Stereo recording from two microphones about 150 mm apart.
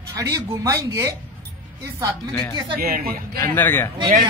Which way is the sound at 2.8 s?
75° right (ahead or behind).